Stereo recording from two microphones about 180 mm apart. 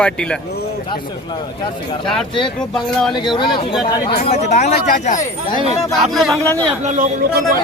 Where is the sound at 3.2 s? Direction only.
25° left (ahead or behind).